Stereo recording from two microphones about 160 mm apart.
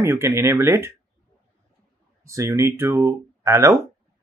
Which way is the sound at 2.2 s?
20° right (ahead or behind).